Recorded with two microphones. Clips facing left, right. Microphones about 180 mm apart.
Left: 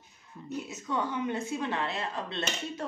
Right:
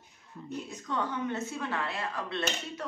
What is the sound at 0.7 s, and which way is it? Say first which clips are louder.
A woman's voice: left 1 dB; 10° left (ahead or behind).